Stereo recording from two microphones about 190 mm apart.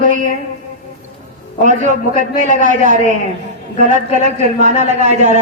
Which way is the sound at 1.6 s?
40° right (ahead or behind).